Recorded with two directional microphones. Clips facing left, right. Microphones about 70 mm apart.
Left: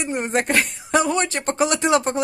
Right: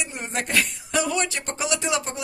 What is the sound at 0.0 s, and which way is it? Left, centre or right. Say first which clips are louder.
Speech: left 8 dB; left.